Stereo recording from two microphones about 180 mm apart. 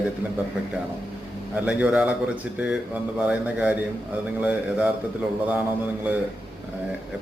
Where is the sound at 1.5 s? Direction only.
10° right (ahead or behind).